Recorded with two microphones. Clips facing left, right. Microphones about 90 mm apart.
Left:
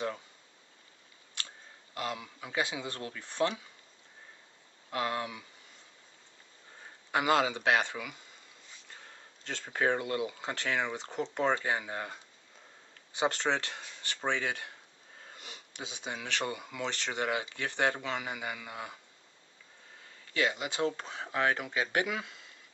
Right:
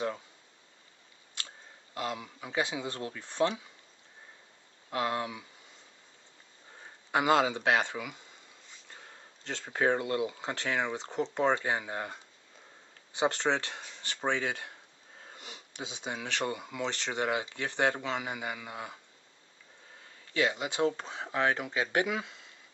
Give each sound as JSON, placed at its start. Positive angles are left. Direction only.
{"t": 2.0, "sound": "speech", "side_deg": -10}
{"t": 4.9, "sound": "speech", "side_deg": -10}
{"t": 7.1, "sound": "speech", "side_deg": -15}
{"t": 9.4, "sound": "speech", "side_deg": -15}
{"t": 13.3, "sound": "speech", "side_deg": -15}
{"t": 20.3, "sound": "speech", "side_deg": -15}